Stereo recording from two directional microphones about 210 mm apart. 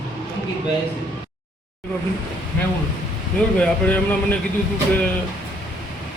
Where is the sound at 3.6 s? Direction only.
5° left (ahead or behind).